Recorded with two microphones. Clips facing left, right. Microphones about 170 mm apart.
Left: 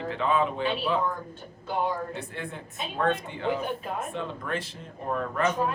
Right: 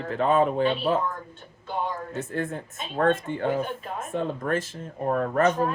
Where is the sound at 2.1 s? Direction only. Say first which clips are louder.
Right 7 dB; 45° right (ahead or behind).